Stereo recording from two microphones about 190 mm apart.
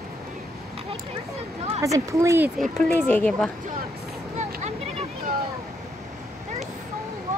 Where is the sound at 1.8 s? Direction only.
15° right (ahead or behind).